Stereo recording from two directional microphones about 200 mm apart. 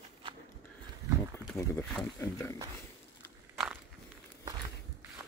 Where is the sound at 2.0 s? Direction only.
15° left (ahead or behind).